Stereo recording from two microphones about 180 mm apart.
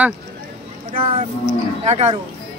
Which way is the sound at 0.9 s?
30° right (ahead or behind).